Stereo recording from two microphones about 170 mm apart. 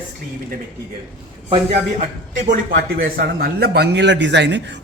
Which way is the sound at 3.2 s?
65° right (ahead or behind).